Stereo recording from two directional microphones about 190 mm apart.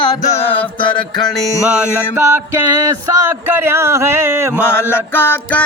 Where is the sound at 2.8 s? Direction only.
20° right (ahead or behind).